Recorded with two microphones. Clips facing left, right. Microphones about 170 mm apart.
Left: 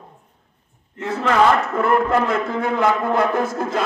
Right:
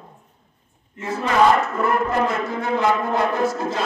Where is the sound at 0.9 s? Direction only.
65° left (ahead or behind).